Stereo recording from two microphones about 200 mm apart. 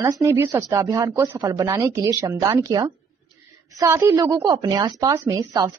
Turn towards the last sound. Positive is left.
turn(degrees=-15)  # may be behind; listen again after turning